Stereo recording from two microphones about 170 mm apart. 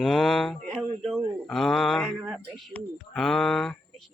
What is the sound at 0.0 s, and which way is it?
A man's voice, centre (ahead or behind).